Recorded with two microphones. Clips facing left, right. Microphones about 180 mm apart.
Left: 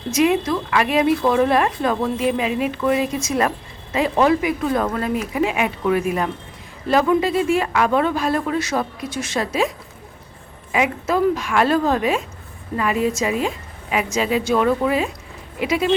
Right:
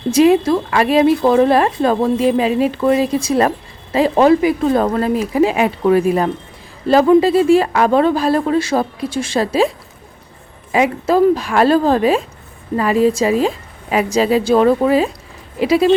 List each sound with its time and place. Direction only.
0.1 s speech: 30° right (ahead or behind)